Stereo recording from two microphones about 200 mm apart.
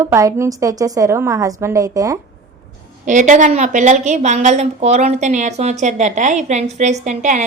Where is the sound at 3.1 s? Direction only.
40° right (ahead or behind).